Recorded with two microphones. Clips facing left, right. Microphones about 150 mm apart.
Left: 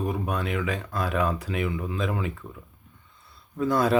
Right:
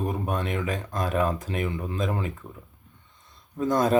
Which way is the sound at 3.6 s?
45° right (ahead or behind).